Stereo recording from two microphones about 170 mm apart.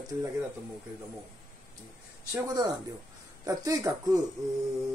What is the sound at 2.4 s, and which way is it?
Speech, 20° right (ahead or behind).